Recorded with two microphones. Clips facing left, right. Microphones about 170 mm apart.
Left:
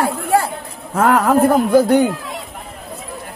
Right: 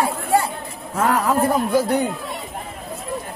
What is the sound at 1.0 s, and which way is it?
Speech, 60° left (ahead or behind).